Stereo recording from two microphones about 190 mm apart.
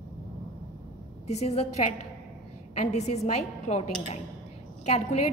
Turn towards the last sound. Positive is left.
turn(degrees=35)  # may be behind; listen again after turning